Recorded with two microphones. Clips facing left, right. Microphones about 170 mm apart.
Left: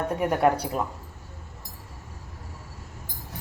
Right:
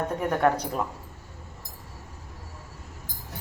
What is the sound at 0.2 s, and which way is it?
Speech, 10° left (ahead or behind).